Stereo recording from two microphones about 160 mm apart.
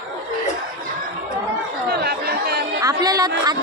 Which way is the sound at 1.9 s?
80° right.